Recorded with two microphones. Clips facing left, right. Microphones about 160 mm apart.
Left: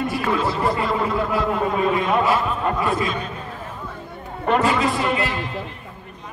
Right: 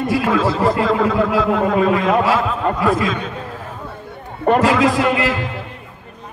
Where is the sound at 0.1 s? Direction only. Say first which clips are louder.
Right 5 dB; 90° right.